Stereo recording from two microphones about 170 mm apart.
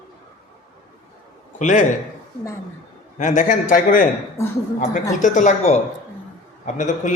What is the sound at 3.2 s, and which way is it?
Speech, 45° left (ahead or behind).